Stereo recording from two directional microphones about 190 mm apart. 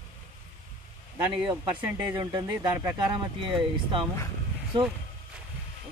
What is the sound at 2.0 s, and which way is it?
Speech, 15° right (ahead or behind).